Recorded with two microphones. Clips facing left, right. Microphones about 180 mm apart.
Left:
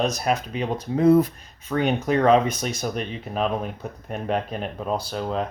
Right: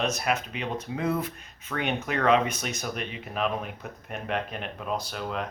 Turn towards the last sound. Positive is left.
turn(degrees=30)  # may be behind; listen again after turning